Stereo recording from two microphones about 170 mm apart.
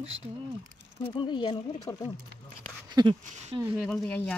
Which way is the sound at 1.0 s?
30° left (ahead or behind).